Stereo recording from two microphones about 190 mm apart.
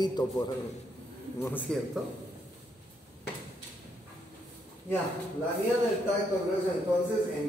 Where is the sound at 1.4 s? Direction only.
10° left (ahead or behind).